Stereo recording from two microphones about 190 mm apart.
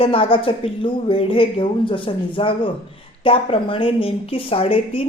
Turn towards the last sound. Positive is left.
turn(degrees=30)  # may be behind; listen again after turning